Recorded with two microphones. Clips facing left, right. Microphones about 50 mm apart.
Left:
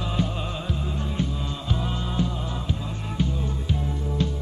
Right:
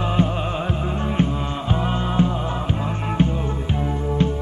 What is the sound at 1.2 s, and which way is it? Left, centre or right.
Music, right.